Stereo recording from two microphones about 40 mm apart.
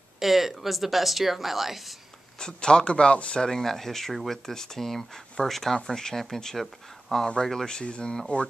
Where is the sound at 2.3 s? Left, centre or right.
Centre.